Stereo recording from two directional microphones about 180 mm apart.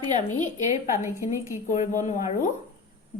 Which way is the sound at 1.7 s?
45° left (ahead or behind).